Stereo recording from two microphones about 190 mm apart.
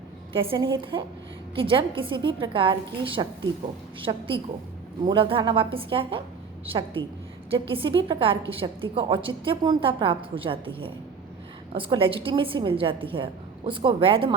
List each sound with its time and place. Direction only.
0.3 s a woman's voice: 25° right (ahead or behind)